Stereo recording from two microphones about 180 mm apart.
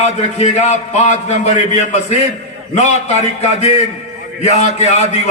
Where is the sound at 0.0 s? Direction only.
35° left (ahead or behind).